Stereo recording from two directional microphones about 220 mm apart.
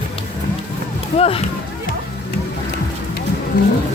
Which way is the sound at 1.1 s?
25° left (ahead or behind).